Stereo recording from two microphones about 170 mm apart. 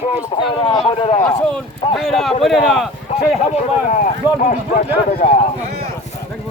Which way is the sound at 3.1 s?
35° left (ahead or behind).